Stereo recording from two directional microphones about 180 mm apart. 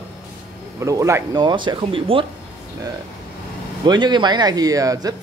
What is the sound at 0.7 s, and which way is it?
A man's voice, 15° right (ahead or behind).